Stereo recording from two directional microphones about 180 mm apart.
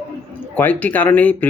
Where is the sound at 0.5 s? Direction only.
10° left (ahead or behind).